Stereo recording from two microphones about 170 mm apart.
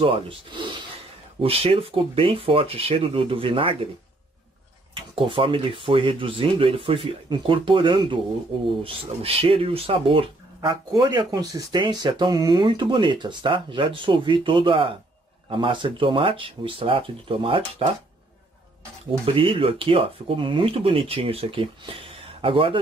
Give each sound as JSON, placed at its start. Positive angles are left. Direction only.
{"t": 0.0, "sound": "speech", "side_deg": -30}
{"t": 4.9, "sound": "speech", "side_deg": -30}
{"t": 19.2, "sound": "speech", "side_deg": -30}